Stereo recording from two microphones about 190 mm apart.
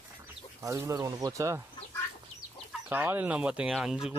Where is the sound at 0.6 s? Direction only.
15° right (ahead or behind).